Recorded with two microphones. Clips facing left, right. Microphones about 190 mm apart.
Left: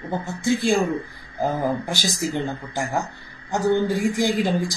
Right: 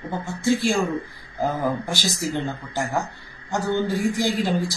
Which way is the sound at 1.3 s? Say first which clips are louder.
Left 1 dB; 15° left (ahead or behind).